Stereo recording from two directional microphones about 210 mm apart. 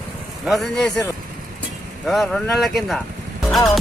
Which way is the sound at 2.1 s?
Centre (ahead or behind).